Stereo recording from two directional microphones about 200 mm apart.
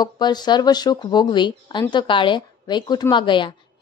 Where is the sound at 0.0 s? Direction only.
20° left (ahead or behind).